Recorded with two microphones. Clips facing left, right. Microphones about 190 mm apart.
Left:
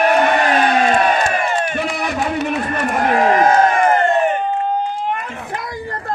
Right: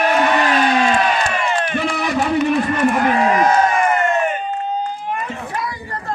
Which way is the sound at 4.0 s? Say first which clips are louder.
Left 3 dB; 35° left (ahead or behind).